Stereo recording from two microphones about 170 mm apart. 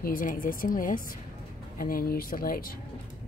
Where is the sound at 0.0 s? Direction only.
55° left (ahead or behind).